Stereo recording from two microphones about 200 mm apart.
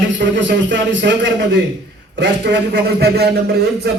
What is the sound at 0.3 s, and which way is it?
A man's voice, 65° right (ahead or behind).